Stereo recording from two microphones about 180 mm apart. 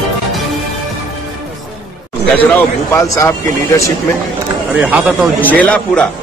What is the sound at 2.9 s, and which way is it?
A man's voice, 15° left (ahead or behind).